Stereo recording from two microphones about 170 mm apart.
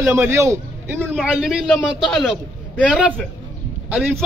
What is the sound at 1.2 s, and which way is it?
A man's voice, centre (ahead or behind).